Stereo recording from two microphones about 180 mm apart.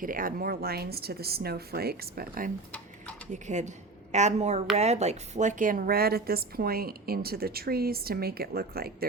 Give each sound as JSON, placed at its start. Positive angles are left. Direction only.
{"t": 0.0, "sound": "a woman's voice", "side_deg": -50}
{"t": 3.3, "sound": "a woman's voice", "side_deg": -40}